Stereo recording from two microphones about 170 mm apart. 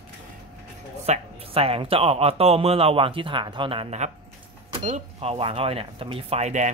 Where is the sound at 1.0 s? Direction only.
40° right (ahead or behind).